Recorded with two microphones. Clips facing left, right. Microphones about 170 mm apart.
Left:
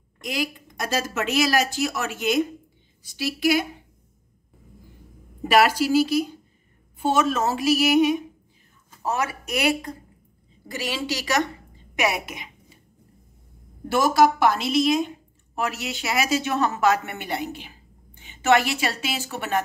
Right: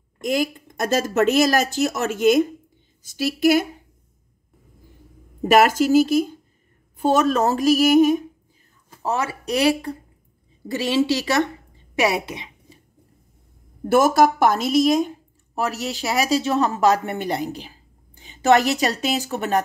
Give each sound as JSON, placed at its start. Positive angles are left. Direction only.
{"t": 0.2, "sound": "speech", "side_deg": -45}
{"t": 5.4, "sound": "a woman's voice", "side_deg": -45}
{"t": 9.0, "sound": "a woman's voice", "side_deg": -30}
{"t": 13.8, "sound": "a woman's voice", "side_deg": -50}